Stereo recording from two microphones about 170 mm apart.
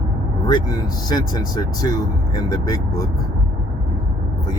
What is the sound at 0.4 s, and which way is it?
Speech, 25° left (ahead or behind).